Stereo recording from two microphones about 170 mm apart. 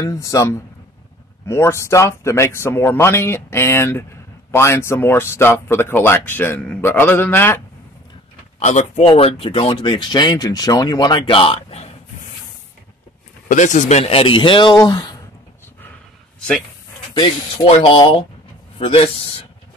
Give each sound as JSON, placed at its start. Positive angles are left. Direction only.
{"t": 0.0, "sound": "speech", "side_deg": 20}
{"t": 8.5, "sound": "speech", "side_deg": 40}
{"t": 13.5, "sound": "speech", "side_deg": 45}
{"t": 16.3, "sound": "a sound", "side_deg": 5}
{"t": 17.1, "sound": "speech", "side_deg": 30}